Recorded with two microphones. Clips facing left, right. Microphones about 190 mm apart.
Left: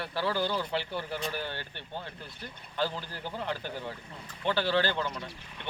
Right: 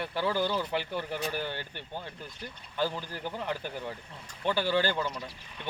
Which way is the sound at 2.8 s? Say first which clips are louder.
Right 1 dB; 15° right (ahead or behind).